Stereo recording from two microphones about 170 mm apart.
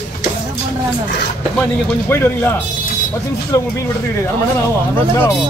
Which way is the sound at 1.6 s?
10° left (ahead or behind).